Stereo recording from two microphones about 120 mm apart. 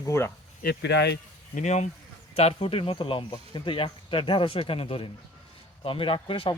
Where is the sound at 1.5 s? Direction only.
80° left.